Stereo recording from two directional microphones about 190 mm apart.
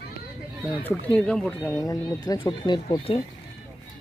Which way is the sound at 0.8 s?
5° left (ahead or behind).